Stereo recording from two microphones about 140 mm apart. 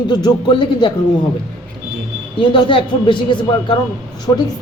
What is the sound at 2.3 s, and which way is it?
A man's voice, 35° left (ahead or behind).